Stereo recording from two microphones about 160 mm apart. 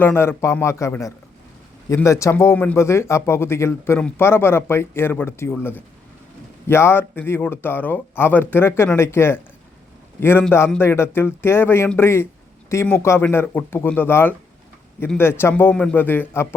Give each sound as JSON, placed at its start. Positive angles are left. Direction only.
{"t": 0.0, "sound": "speech", "side_deg": 15}